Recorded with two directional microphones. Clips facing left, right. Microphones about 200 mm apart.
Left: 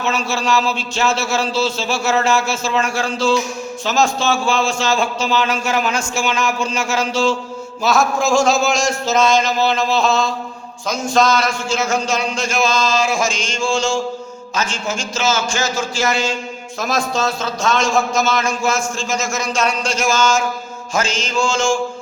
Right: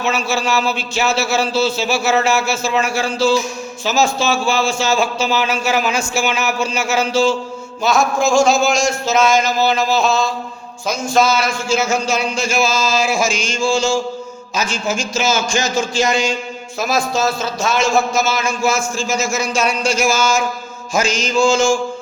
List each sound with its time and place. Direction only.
0.1 s a man's voice: 5° right (ahead or behind)
16.8 s a man's voice: 5° right (ahead or behind)